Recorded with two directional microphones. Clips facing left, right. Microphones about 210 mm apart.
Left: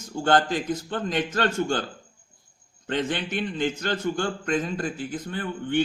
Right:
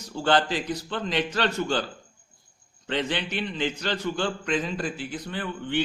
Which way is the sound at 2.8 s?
45° left (ahead or behind).